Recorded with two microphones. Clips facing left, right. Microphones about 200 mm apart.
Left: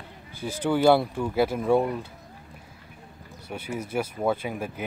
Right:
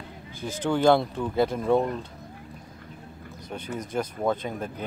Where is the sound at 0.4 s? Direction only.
10° left (ahead or behind).